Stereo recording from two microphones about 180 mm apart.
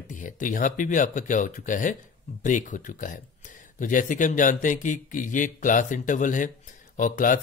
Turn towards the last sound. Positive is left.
turn(degrees=45)  # may be behind; listen again after turning